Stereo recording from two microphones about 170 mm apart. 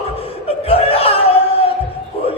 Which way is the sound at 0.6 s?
35° left (ahead or behind).